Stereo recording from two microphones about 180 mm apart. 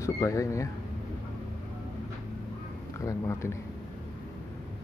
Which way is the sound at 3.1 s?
15° left (ahead or behind).